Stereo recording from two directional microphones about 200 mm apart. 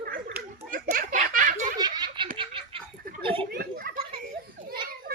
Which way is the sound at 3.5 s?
50° right (ahead or behind).